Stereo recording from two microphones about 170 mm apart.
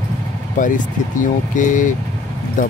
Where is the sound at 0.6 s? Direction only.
50° left (ahead or behind).